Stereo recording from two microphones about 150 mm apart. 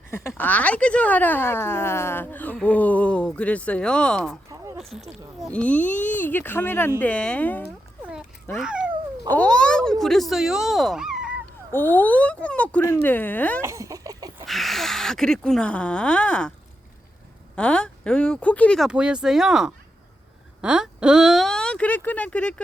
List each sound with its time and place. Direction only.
0.1 s speech: 15° left (ahead or behind)
4.4 s a sound: 20° right (ahead or behind)
4.8 s speech: centre (ahead or behind)
8.5 s speech: 5° right (ahead or behind)
9.3 s speech: 10° left (ahead or behind)
11.7 s speech: 15° left (ahead or behind)
13.6 s a sound: 20° right (ahead or behind)
14.4 s speech: centre (ahead or behind)
17.5 s speech: 5° left (ahead or behind)
18.9 s speech: 5° right (ahead or behind)